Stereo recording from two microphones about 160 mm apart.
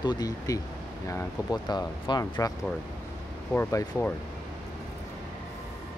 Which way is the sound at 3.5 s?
20° left (ahead or behind).